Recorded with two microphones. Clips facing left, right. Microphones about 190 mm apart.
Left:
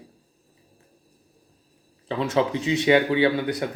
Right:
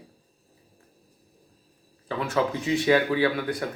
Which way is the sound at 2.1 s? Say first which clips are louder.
Left 3 dB; 20° left (ahead or behind).